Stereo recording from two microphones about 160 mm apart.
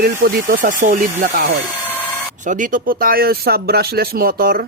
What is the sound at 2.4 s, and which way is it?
Speech, 55° right (ahead or behind).